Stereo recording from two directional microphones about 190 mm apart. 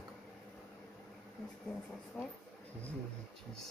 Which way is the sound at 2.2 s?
5° left (ahead or behind).